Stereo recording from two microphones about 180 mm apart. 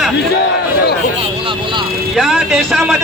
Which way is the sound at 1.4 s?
25° right (ahead or behind).